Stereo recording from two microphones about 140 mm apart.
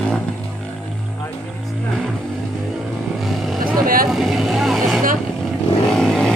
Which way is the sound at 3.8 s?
90° right.